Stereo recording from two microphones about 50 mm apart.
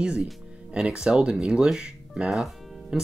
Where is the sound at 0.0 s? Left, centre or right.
Right.